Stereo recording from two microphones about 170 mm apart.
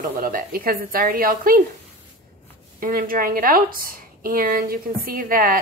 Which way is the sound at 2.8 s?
55° right (ahead or behind).